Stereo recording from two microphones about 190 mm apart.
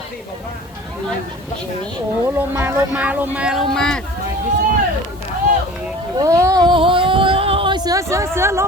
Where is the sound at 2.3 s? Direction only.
10° right (ahead or behind).